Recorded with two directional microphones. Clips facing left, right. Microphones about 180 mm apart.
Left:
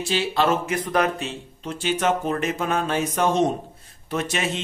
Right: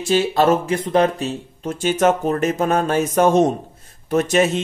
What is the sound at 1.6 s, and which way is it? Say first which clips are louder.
Speech: right 6 dB; 45° right (ahead or behind).